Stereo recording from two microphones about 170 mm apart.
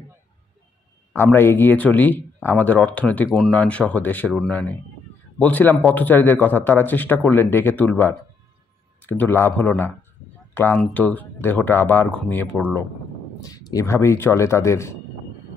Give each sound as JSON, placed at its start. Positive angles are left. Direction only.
{"t": 1.1, "sound": "a man's voice", "side_deg": 15}
{"t": 13.4, "sound": "a man's voice", "side_deg": 20}